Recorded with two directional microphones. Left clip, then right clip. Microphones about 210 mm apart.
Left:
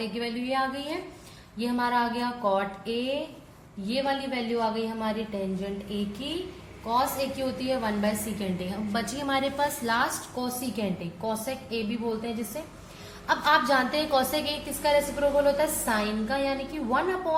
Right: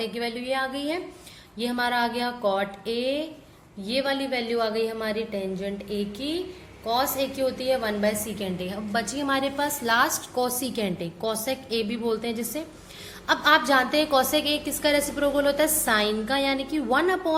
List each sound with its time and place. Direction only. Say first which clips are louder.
0.0 s a woman's voice: right 3 dB; 30° right (ahead or behind)
6.8 s a woman's voice: right 1 dB; 30° right (ahead or behind)
13.2 s a woman's voice: right 2 dB; 30° right (ahead or behind)